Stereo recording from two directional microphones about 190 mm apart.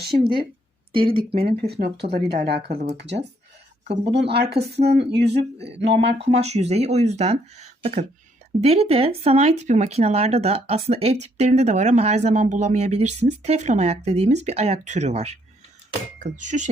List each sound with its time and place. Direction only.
0.1 s speech: 45° right (ahead or behind)
0.9 s speech: 30° right (ahead or behind)
1.5 s speech: 55° right (ahead or behind)
2.6 s speech: 35° right (ahead or behind)
4.0 s speech: 65° right (ahead or behind)
5.5 s speech: 30° right (ahead or behind)
5.8 s speech: 65° right (ahead or behind)
6.2 s speech: 35° right (ahead or behind)